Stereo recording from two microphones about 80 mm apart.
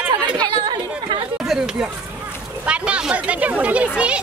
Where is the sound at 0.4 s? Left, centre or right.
Right.